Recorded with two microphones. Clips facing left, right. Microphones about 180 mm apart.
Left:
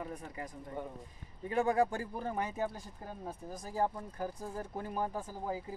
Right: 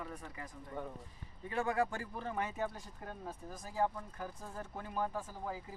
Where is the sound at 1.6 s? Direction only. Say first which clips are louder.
Left 4 dB; 40° left (ahead or behind).